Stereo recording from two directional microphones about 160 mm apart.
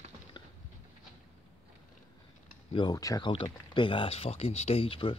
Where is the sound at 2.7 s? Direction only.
25° left (ahead or behind).